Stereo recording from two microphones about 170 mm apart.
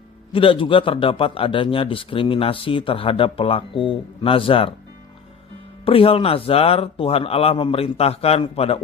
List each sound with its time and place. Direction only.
0.3 s a man's voice: 30° left (ahead or behind)
5.8 s a man's voice: 35° left (ahead or behind)